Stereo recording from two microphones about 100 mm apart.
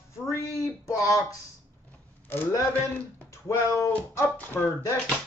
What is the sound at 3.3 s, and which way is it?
Speech, 30° left (ahead or behind).